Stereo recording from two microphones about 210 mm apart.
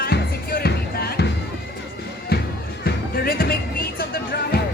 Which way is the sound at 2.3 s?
50° left (ahead or behind).